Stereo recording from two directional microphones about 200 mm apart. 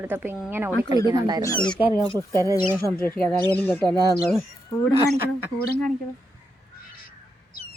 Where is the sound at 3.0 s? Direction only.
5° left (ahead or behind).